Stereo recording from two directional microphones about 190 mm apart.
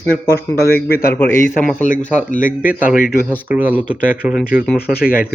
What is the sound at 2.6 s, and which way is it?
Speech, 10° right (ahead or behind).